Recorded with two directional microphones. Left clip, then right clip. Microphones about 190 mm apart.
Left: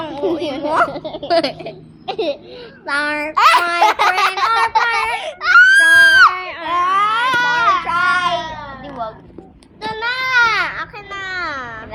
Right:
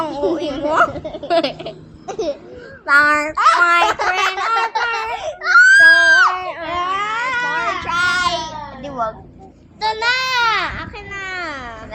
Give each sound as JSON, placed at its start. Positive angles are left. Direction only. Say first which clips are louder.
{"t": 0.0, "sound": "a sound", "louder": "right 2 dB", "side_deg": 5}
{"t": 0.5, "sound": "a child's voice", "louder": "right 1 dB", "side_deg": 15}
{"t": 3.3, "sound": "a child's voice", "louder": "left 5 dB", "side_deg": 30}
{"t": 3.8, "sound": "babbling", "louder": "left 4 dB", "side_deg": 30}
{"t": 4.4, "sound": "baby cry", "louder": "left 3 dB", "side_deg": 25}
{"t": 6.4, "sound": "child singing", "louder": "left 4 dB", "side_deg": 15}
{"t": 9.9, "sound": "baby cry", "louder": "left 1 dB", "side_deg": -25}